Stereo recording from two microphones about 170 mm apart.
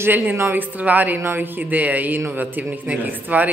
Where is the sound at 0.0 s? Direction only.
10° right (ahead or behind).